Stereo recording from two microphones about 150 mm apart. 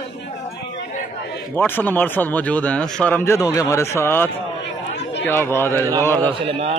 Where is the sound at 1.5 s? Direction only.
15° left (ahead or behind).